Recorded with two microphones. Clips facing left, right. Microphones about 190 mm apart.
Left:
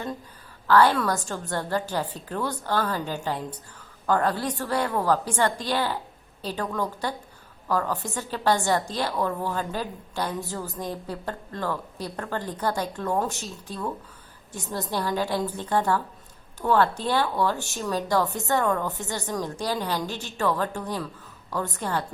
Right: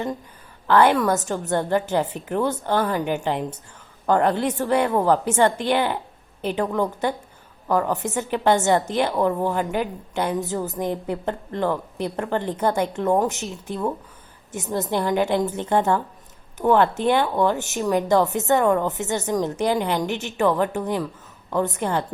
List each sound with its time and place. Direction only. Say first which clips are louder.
0.7 s speech: right 3 dB; 20° right (ahead or behind)